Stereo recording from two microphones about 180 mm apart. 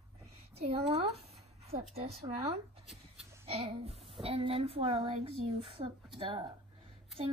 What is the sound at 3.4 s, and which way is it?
A woman's voice, 30° right (ahead or behind).